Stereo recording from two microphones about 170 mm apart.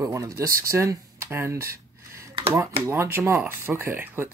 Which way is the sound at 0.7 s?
15° right (ahead or behind).